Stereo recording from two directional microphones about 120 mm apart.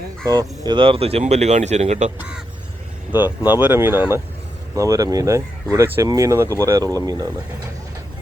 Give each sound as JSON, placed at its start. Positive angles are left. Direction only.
{"t": 0.3, "sound": "speech", "side_deg": -35}
{"t": 2.1, "sound": "speech", "side_deg": -10}
{"t": 4.7, "sound": "speech", "side_deg": -30}